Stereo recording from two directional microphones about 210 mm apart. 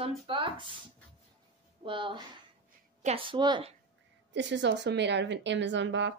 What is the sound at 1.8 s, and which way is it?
Speech, 25° right (ahead or behind).